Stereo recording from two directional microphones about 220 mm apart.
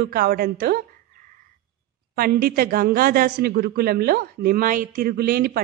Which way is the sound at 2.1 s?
45° right (ahead or behind).